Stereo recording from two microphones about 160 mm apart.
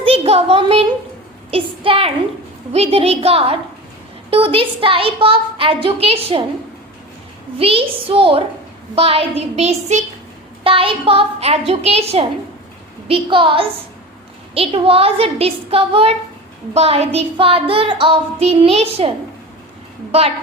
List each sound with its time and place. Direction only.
0.0 s a sound: 35° right (ahead or behind)
1.5 s a woman's voice: 35° right (ahead or behind)
7.6 s a woman's voice: 35° right (ahead or behind)